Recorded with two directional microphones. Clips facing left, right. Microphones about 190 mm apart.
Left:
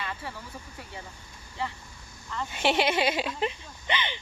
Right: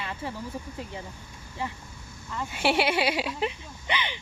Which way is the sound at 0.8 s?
20° right (ahead or behind).